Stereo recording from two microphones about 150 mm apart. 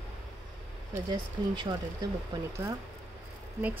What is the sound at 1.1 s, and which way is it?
Speech, 30° right (ahead or behind).